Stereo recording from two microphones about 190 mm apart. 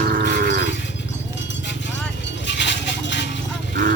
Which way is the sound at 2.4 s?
70° left (ahead or behind).